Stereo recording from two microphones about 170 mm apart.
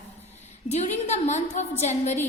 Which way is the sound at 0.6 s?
40° left (ahead or behind).